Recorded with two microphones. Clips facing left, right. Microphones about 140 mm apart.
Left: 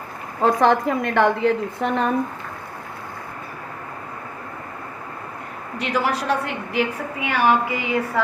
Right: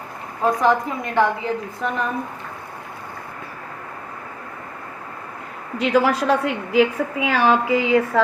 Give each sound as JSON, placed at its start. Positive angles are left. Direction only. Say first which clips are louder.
{"t": 0.4, "sound": "a woman's voice", "louder": "left 1 dB", "side_deg": 70}
{"t": 5.9, "sound": "a woman's voice", "louder": "right 4 dB", "side_deg": -90}